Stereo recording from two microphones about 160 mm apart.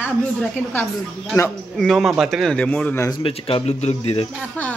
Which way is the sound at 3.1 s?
35° left (ahead or behind).